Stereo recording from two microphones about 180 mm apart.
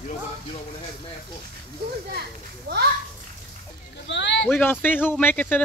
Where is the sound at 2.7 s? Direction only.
60° right (ahead or behind).